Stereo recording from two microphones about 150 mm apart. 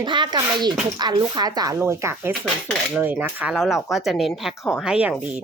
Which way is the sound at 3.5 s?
Centre (ahead or behind).